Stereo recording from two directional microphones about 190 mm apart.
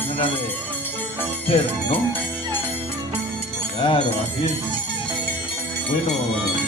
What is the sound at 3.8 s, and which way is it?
Speech, 30° left (ahead or behind).